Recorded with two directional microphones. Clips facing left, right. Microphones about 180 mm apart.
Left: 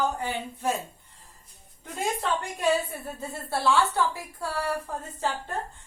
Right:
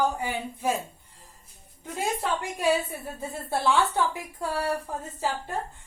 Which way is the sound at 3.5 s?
15° right (ahead or behind).